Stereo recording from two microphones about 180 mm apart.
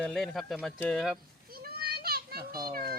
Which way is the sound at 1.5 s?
60° right (ahead or behind).